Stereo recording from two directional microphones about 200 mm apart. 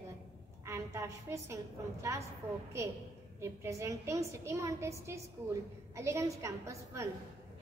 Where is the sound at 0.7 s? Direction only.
15° right (ahead or behind).